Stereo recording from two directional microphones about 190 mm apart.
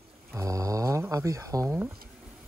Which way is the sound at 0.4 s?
15° right (ahead or behind).